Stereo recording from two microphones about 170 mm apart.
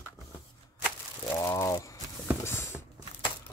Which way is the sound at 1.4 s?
15° left (ahead or behind).